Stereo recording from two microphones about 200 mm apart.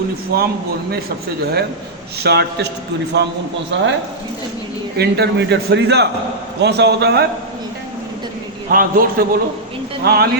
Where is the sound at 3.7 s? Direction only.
65° right (ahead or behind).